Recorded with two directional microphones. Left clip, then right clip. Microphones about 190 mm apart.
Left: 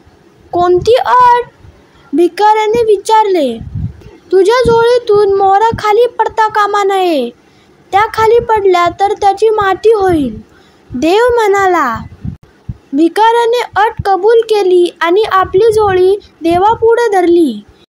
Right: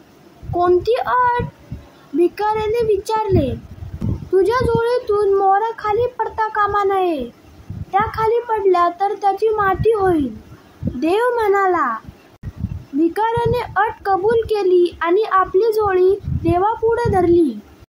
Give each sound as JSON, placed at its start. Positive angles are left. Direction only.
{"t": 0.5, "sound": "a woman's voice", "side_deg": 35}
{"t": 13.0, "sound": "a woman's voice", "side_deg": 40}